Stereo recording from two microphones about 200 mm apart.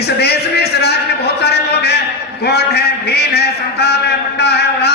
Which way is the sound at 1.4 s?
55° left (ahead or behind).